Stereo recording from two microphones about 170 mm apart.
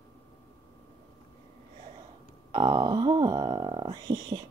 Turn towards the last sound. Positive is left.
turn(degrees=-25)  # may be behind; listen again after turning